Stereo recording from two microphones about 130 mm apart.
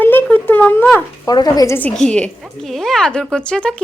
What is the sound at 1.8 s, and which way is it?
Speech, 10° left (ahead or behind).